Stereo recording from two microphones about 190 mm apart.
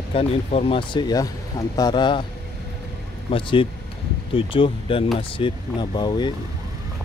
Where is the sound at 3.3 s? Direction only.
25° left (ahead or behind).